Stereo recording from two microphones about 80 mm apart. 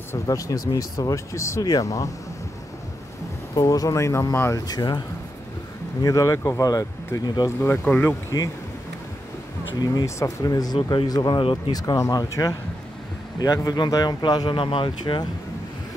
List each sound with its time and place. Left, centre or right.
0.3 s speech: left
1.6 s speech: left
3.5 s speech: left
4.6 s speech: left
6.0 s speech: left
7.4 s speech: left
7.8 s speech: centre
10.0 s speech: left
11.2 s speech: left
11.7 s speech: left